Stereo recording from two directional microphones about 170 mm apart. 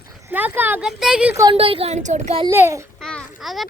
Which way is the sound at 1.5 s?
35° right (ahead or behind).